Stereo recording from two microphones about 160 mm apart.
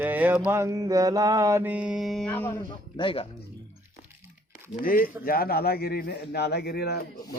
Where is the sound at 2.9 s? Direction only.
35° left (ahead or behind).